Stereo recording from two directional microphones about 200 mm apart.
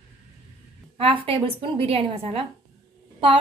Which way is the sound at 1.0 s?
30° right (ahead or behind).